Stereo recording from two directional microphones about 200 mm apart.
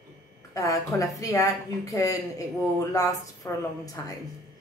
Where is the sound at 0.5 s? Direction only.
15° left (ahead or behind).